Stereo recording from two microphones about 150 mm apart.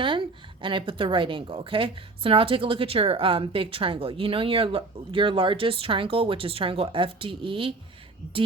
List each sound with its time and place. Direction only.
0.0 s a woman's voice: 35° right (ahead or behind)